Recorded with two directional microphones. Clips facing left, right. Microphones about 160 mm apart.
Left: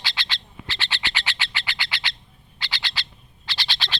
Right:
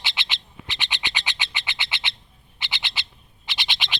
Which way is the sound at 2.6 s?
20° right (ahead or behind).